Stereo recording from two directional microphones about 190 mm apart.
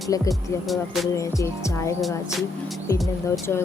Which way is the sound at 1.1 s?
15° left (ahead or behind).